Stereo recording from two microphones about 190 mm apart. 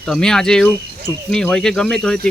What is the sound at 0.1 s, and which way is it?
Speech, 5° left (ahead or behind).